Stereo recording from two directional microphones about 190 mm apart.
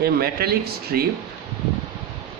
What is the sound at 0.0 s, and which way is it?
Speech, 55° right (ahead or behind).